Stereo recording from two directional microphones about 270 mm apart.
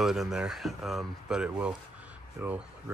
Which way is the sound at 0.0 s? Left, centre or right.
Centre.